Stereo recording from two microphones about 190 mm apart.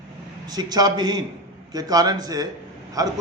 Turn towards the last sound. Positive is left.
turn(degrees=-20)  # may be behind; listen again after turning